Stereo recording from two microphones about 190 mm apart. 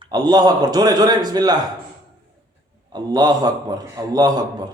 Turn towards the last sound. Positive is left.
turn(degrees=-20)  # may be behind; listen again after turning